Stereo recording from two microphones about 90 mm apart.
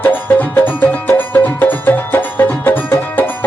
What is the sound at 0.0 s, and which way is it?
Music, 20° left (ahead or behind).